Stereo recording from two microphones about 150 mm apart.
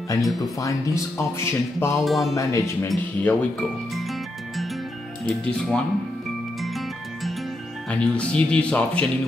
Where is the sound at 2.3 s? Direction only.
20° left (ahead or behind).